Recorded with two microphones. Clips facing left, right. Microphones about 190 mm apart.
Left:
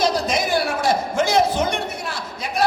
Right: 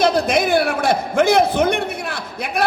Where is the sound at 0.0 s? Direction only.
60° right (ahead or behind).